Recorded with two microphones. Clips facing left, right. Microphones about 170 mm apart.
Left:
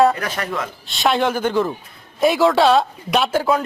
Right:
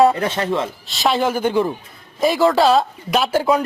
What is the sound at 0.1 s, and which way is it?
Speech, 25° right (ahead or behind).